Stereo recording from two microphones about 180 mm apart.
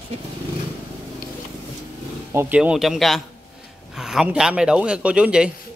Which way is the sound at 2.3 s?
10° right (ahead or behind).